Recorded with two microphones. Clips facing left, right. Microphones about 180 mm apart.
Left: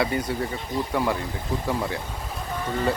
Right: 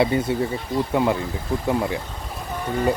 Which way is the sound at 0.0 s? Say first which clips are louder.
Right 5 dB; 25° right (ahead or behind).